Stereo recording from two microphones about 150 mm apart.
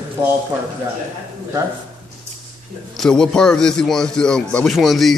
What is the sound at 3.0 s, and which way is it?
A man's voice, 5° left (ahead or behind).